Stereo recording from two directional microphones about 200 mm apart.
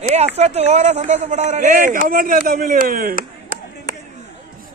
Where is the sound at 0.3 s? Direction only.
30° right (ahead or behind); by 3.6 s 45° right (ahead or behind).